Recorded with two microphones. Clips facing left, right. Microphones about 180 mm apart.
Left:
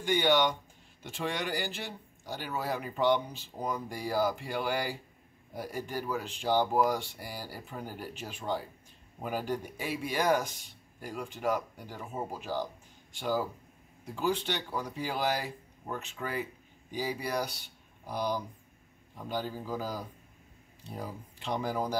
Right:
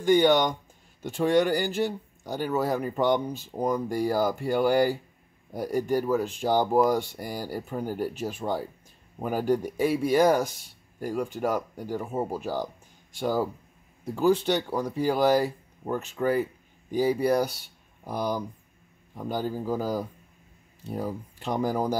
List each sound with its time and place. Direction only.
0.0 s speech: 45° right (ahead or behind)